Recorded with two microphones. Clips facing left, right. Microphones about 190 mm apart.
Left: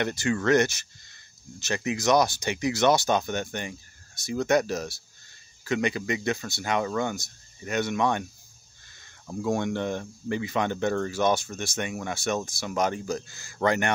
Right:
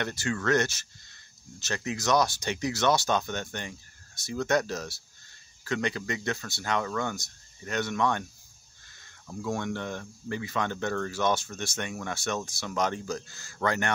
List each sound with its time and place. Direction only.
0.0 s speech: 15° left (ahead or behind)
9.3 s speech: 20° left (ahead or behind)